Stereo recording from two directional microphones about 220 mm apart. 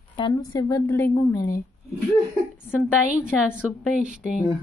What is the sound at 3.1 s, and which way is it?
A woman's voice, 5° right (ahead or behind).